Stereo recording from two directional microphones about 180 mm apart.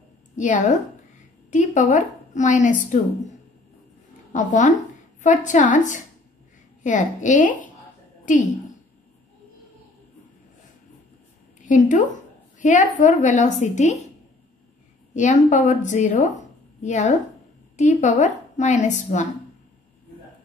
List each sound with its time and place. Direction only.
0.4 s a woman's voice: 45° left (ahead or behind)
4.3 s a woman's voice: 45° left (ahead or behind)
11.6 s a woman's voice: 45° left (ahead or behind)
15.1 s a woman's voice: 45° left (ahead or behind)